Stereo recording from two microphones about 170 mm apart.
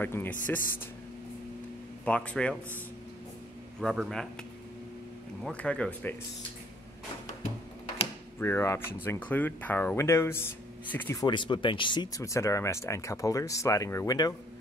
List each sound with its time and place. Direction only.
0.0 s speech: 10° left (ahead or behind)
2.0 s speech: 5° left (ahead or behind)
3.8 s a man's voice: centre (ahead or behind)
5.4 s speech: 5° left (ahead or behind)
8.4 s speech: 15° left (ahead or behind)
11.2 s speech: 30° left (ahead or behind)